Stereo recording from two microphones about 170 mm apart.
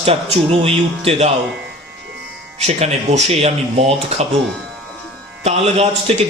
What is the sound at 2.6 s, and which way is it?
A man's voice, 40° right (ahead or behind).